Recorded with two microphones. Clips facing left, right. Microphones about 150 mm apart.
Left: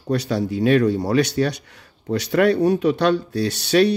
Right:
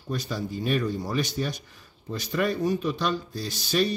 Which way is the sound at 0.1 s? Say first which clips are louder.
Left 9 dB; 70° left (ahead or behind).